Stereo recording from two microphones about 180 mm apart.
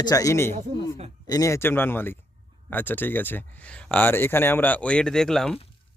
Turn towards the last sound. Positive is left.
turn(degrees=0)  # may be behind; listen again after turning